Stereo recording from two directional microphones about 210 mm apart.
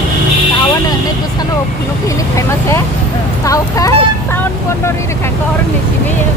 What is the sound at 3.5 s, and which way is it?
Speech, 15° left (ahead or behind).